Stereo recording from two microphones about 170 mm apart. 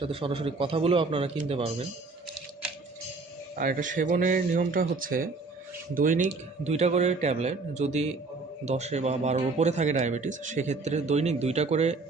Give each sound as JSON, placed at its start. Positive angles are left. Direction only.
{"t": 0.0, "sound": "speech", "side_deg": -35}
{"t": 3.5, "sound": "a man's voice", "side_deg": -55}